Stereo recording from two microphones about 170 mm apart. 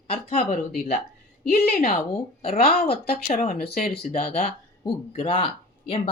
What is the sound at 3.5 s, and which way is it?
Speech, 60° left (ahead or behind).